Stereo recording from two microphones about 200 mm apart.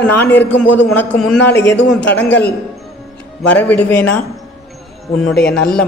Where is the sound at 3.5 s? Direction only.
10° left (ahead or behind).